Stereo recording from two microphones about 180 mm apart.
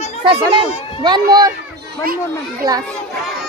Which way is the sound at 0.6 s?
25° right (ahead or behind).